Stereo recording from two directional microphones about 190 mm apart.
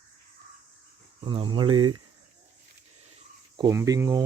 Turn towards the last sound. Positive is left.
turn(degrees=-15)  # may be behind; listen again after turning